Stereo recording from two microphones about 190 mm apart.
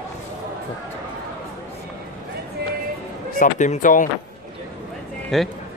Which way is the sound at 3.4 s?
40° left (ahead or behind).